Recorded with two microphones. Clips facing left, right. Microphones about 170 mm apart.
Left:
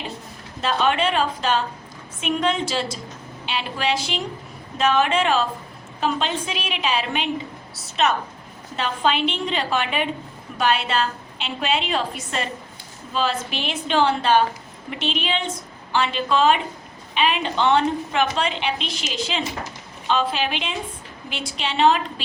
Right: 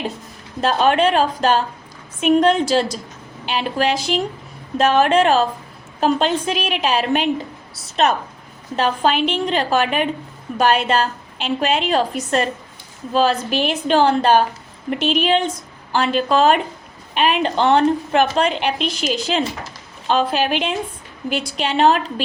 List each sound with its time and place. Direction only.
0.6 s a woman's voice: 45° right (ahead or behind)
8.7 s a woman's voice: 45° right (ahead or behind)